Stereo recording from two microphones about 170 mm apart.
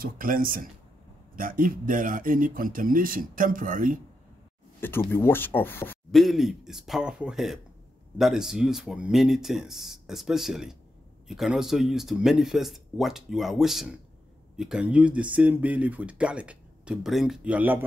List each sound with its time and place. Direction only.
0.0 s speech: 55° right (ahead or behind)
4.7 s speech: 10° left (ahead or behind)
6.1 s speech: centre (ahead or behind)